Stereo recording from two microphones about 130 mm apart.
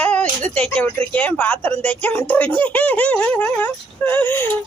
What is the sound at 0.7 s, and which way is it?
Speech, 10° left (ahead or behind).